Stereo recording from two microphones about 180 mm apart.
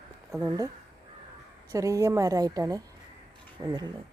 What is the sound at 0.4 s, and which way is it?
Speech, 20° right (ahead or behind).